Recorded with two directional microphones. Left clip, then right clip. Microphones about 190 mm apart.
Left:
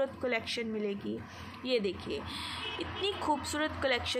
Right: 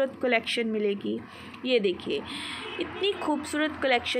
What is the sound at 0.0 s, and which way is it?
A woman's voice, 10° right (ahead or behind).